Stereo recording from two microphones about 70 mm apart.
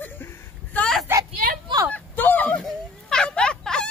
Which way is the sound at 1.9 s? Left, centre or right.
Left.